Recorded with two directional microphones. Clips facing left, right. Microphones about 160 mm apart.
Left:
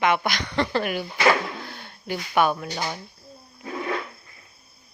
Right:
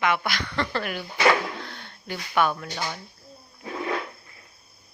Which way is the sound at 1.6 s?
10° left (ahead or behind).